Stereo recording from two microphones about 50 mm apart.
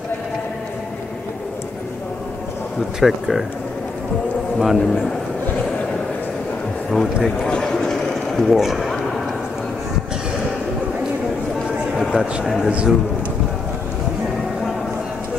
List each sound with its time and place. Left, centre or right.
3.0 s speech: centre
4.6 s speech: centre
7.4 s a sound: centre
8.5 s speech: centre
11.9 s a sound: centre
12.6 s a man's voice: centre